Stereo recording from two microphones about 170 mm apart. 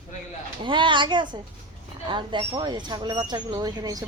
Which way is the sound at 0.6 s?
30° right (ahead or behind).